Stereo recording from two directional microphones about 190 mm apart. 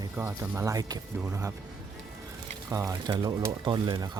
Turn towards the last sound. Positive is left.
turn(degrees=-25)  # may be behind; listen again after turning